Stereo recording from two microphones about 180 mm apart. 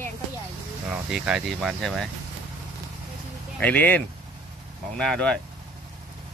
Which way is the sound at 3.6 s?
10° left (ahead or behind).